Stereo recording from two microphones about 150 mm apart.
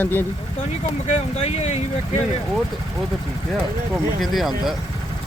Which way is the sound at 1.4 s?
45° left (ahead or behind).